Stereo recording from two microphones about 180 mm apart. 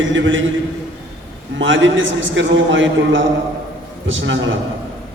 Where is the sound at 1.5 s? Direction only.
90° right.